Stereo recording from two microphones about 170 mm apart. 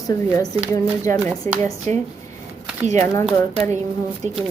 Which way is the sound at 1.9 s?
45° right (ahead or behind).